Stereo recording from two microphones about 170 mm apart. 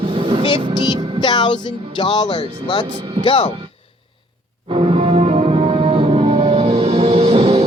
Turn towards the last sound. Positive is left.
turn(degrees=-35)  # may be behind; listen again after turning